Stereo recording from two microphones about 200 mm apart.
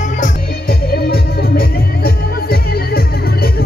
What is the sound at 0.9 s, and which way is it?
Music, 50° left (ahead or behind).